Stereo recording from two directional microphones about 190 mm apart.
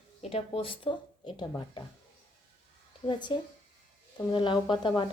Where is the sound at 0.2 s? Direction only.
30° left (ahead or behind).